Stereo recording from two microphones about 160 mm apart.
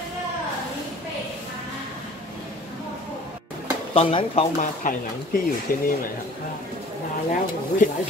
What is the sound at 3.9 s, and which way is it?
Speech, 35° left (ahead or behind).